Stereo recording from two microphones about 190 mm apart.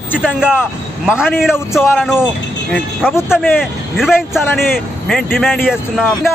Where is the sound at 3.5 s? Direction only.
Centre (ahead or behind).